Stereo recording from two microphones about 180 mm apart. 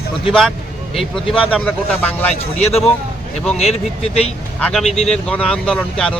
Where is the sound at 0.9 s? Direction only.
Centre (ahead or behind).